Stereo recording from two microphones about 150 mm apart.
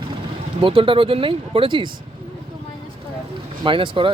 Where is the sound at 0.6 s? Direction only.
35° right (ahead or behind).